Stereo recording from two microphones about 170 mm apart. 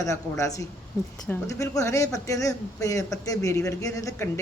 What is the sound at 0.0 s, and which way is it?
A man's voice, 20° left (ahead or behind).